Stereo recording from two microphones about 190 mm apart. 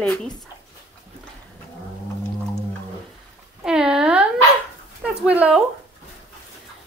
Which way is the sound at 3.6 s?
5° right (ahead or behind).